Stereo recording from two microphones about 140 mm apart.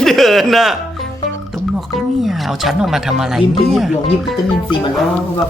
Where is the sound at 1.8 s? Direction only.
Centre (ahead or behind).